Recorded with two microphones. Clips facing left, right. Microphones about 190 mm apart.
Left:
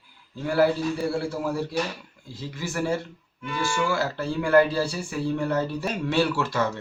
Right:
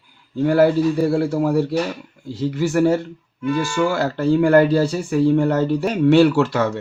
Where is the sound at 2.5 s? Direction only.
60° right (ahead or behind).